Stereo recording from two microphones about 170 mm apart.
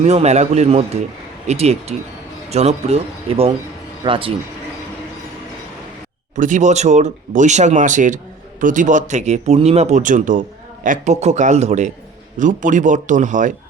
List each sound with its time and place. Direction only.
0.0 s speech: 40° right (ahead or behind)
6.3 s speech: 50° right (ahead or behind)